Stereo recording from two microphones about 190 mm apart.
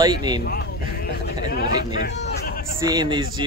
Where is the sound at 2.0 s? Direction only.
60° left (ahead or behind).